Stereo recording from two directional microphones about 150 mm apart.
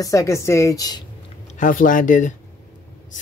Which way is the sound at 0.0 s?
20° left (ahead or behind).